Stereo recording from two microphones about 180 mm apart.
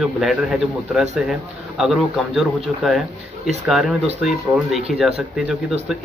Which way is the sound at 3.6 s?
Centre (ahead or behind).